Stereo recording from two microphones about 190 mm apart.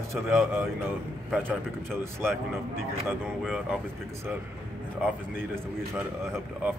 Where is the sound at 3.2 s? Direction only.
Centre (ahead or behind).